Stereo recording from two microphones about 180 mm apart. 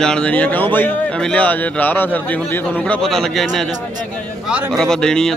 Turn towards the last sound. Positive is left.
turn(degrees=5)  # may be behind; listen again after turning